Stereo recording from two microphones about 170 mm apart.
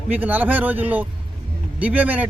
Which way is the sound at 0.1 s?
10° right (ahead or behind).